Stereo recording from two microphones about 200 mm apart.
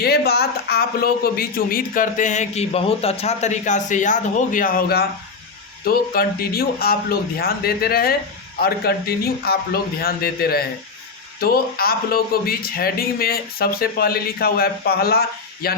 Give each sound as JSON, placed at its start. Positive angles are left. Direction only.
{"t": 0.0, "sound": "speech", "side_deg": 50}